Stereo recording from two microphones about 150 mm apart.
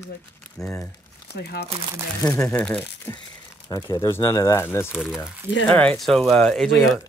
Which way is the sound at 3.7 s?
20° left (ahead or behind).